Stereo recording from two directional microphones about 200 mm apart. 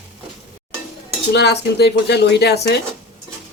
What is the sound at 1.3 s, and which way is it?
Speech, 55° left (ahead or behind).